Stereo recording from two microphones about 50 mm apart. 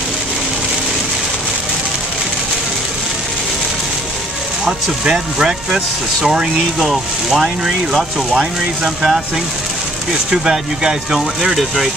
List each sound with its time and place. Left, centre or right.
5.0 s speech: centre
6.8 s speech: centre
10.3 s speech: centre